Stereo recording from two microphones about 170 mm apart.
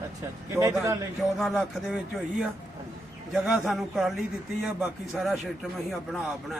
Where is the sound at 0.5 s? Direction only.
15° right (ahead or behind).